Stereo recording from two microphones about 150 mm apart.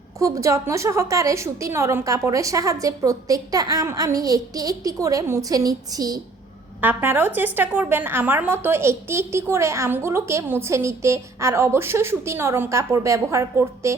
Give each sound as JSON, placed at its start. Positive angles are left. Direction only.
{"t": 0.2, "sound": "a woman's voice", "side_deg": -20}
{"t": 6.8, "sound": "a woman's voice", "side_deg": -15}